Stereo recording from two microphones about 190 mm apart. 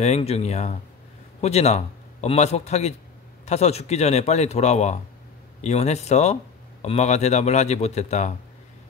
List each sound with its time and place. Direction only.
0.0 s a man's voice: 35° left (ahead or behind)